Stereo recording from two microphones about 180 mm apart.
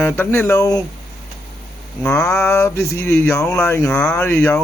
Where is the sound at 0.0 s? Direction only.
10° left (ahead or behind).